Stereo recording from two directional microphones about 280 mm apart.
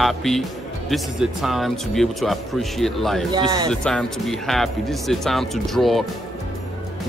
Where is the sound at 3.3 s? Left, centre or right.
Centre.